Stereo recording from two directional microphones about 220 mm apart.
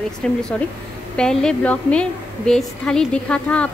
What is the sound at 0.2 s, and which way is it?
A woman's voice, 5° left (ahead or behind).